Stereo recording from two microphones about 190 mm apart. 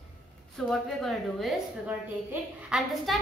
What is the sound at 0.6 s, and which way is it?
A woman's voice, centre (ahead or behind).